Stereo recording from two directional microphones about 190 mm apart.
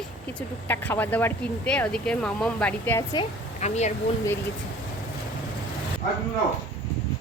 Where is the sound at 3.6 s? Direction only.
35° left (ahead or behind).